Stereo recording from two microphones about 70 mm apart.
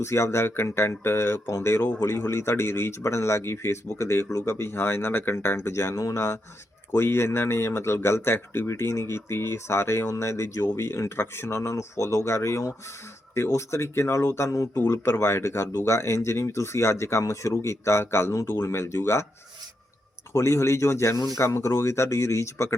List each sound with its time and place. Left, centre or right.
0.0 s a man's voice: left
14.8 s a man's voice: left
20.3 s a man's voice: left